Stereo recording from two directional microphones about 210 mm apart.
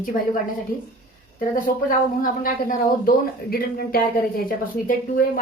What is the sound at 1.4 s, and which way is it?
Speech, 40° left (ahead or behind).